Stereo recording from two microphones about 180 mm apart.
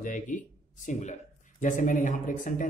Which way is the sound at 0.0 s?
45° left (ahead or behind).